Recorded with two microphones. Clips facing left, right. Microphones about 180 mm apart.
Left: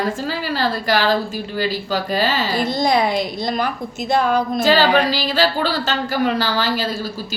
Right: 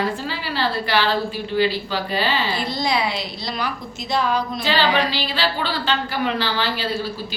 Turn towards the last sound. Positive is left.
turn(degrees=45)  # may be behind; listen again after turning